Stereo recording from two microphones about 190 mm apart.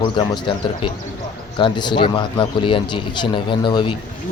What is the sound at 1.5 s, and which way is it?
A man's voice, 25° left (ahead or behind).